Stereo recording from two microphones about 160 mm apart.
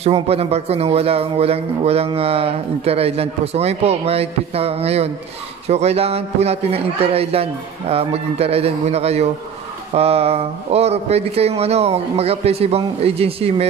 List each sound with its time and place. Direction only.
0.0 s a man's voice: 40° right (ahead or behind)